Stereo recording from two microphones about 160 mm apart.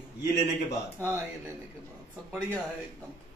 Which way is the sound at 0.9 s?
15° right (ahead or behind).